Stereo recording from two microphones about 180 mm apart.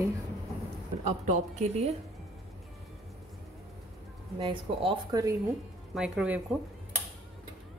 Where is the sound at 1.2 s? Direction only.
40° right (ahead or behind).